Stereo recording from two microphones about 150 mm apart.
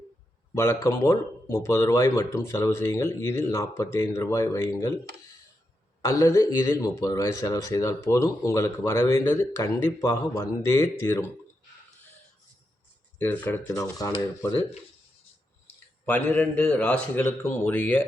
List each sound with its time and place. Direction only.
0.5 s speech: 20° left (ahead or behind)
6.0 s speech: 20° left (ahead or behind)
13.1 s a man's voice: 10° left (ahead or behind)
16.0 s a man's voice: 10° left (ahead or behind)